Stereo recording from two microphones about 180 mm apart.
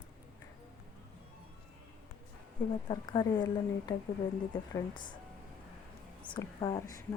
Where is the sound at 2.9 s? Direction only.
25° left (ahead or behind).